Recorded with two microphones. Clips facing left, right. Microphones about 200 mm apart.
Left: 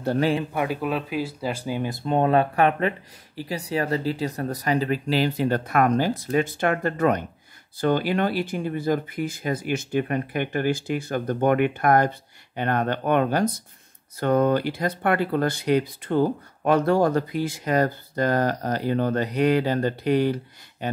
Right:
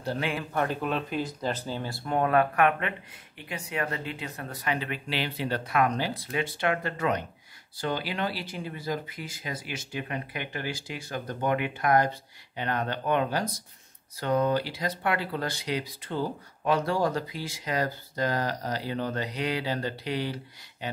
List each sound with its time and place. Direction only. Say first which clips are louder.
0.5 s speech: left 3 dB; 10° left (ahead or behind); by 21.0 s 50° left (ahead or behind)